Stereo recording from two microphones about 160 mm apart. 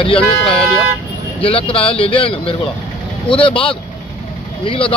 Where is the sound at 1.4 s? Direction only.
35° left (ahead or behind).